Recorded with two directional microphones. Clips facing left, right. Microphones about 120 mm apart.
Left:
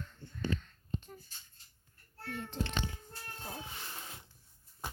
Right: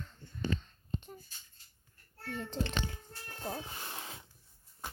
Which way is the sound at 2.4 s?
35° right (ahead or behind).